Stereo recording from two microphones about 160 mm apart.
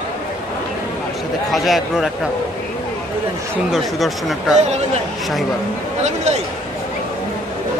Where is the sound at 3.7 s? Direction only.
Centre (ahead or behind).